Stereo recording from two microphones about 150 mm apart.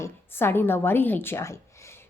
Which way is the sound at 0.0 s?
15° left (ahead or behind).